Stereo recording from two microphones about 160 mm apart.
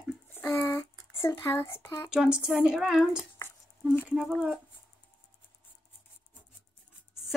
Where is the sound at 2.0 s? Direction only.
5° right (ahead or behind).